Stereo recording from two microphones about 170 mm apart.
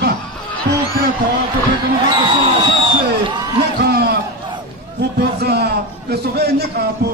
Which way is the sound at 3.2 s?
25° right (ahead or behind).